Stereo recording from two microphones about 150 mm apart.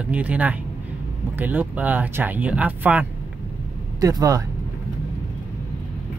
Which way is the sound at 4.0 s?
25° right (ahead or behind).